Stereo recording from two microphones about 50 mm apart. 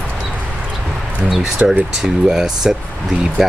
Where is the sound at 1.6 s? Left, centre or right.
Right.